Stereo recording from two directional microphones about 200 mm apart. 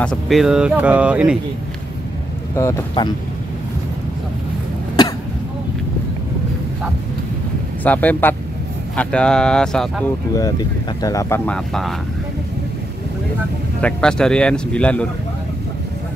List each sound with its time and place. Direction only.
0.0 s speech: centre (ahead or behind)
3.0 s speech: 20° left (ahead or behind)
7.8 s speech: 10° left (ahead or behind)
10.3 s speech: 20° left (ahead or behind); by 11.9 s 5° left (ahead or behind)
13.7 s speech: 5° left (ahead or behind)